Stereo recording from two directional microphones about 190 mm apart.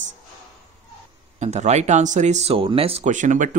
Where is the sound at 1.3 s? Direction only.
35° right (ahead or behind).